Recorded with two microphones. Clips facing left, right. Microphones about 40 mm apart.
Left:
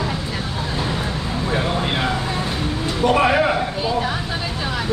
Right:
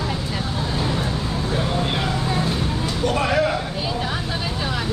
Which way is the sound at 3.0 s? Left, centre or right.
Left.